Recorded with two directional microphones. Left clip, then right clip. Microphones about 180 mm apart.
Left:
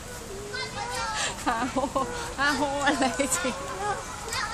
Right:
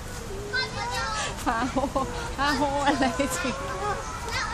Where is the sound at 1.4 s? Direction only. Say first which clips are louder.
Right 2 dB; 15° left (ahead or behind).